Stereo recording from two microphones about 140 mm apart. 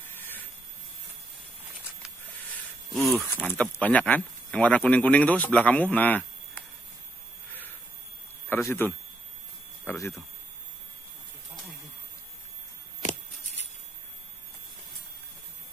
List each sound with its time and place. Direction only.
0.1 s a sound: 15° left (ahead or behind)
2.9 s speech: centre (ahead or behind)
3.3 s speech: 10° left (ahead or behind)
8.5 s speech: 15° left (ahead or behind)